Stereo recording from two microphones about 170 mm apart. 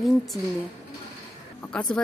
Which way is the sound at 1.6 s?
5° left (ahead or behind).